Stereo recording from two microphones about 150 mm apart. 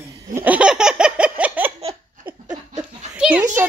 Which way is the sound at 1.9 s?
25° right (ahead or behind).